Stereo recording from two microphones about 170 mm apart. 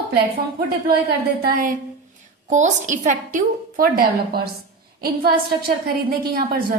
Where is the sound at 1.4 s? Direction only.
55° right (ahead or behind).